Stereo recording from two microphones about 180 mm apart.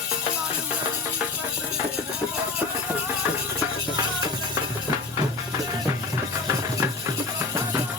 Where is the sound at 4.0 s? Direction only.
20° right (ahead or behind).